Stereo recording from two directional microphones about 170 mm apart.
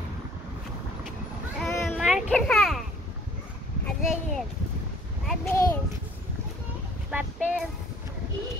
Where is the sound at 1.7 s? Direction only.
15° left (ahead or behind).